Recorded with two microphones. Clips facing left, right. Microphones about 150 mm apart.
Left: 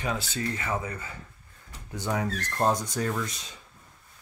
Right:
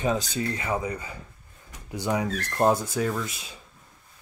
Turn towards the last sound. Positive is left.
turn(degrees=-5)  # may be behind; listen again after turning